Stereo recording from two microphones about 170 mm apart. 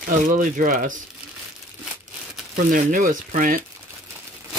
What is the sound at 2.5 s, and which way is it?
Speech, 55° right (ahead or behind).